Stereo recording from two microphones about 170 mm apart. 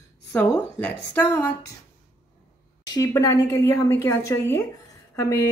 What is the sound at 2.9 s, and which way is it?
A woman's voice, 20° left (ahead or behind).